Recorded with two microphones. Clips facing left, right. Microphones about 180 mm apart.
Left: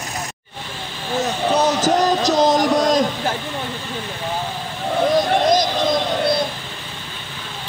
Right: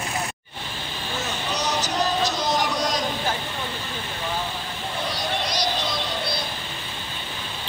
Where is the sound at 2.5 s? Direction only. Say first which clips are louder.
Left 8 dB; 50° left (ahead or behind).